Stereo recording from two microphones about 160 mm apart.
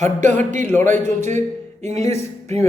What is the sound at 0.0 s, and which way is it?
Speech, 50° right (ahead or behind).